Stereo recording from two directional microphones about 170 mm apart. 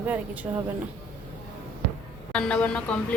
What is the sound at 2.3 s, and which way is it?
Speech, 5° left (ahead or behind).